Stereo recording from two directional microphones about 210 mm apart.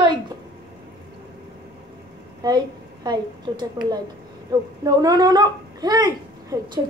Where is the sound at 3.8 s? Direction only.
20° right (ahead or behind).